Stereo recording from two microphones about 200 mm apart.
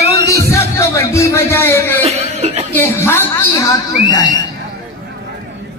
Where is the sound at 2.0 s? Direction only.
30° right (ahead or behind).